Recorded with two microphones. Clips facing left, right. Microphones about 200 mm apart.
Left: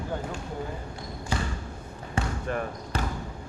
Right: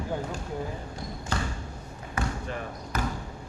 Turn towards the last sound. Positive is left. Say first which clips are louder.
# even
turn(degrees=30)  # may be behind; listen again after turning